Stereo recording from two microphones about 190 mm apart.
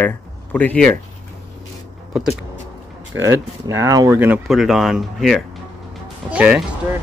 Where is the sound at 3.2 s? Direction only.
15° right (ahead or behind).